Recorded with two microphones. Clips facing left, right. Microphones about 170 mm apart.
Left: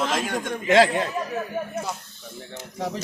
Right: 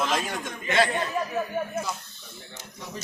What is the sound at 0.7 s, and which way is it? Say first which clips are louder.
Speech: left 6 dB; 90° left.